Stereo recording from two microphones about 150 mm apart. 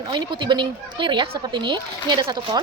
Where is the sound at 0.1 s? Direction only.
30° right (ahead or behind).